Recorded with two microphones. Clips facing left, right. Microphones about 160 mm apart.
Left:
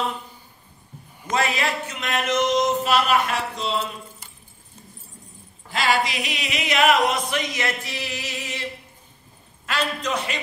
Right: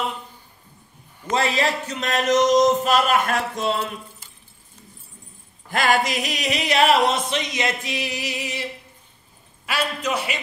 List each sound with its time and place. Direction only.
1.3 s a sound: 30° right (ahead or behind); by 3.8 s 50° right (ahead or behind)
5.7 s singing: 50° right (ahead or behind); by 8.6 s 15° right (ahead or behind)
9.7 s a man's voice: 5° right (ahead or behind)